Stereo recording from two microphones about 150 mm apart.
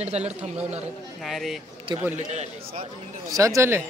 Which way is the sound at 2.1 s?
50° right (ahead or behind).